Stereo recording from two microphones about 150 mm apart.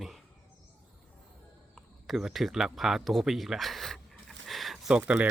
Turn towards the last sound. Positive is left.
turn(degrees=-10)  # may be behind; listen again after turning